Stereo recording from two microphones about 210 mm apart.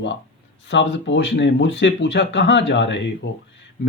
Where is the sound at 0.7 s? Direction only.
60° left (ahead or behind).